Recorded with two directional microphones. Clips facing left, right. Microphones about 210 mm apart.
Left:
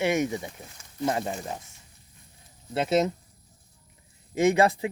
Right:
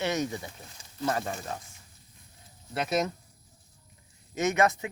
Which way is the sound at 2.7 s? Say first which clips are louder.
Left 5 dB; 25° left (ahead or behind).